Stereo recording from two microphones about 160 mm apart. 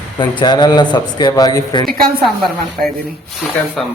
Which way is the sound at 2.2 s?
Centre (ahead or behind).